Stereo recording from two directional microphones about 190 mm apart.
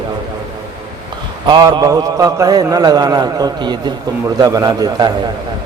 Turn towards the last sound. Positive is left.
turn(degrees=-20)  # may be behind; listen again after turning